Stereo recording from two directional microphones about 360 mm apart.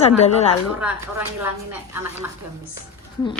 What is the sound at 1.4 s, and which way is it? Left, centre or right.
Speech, centre.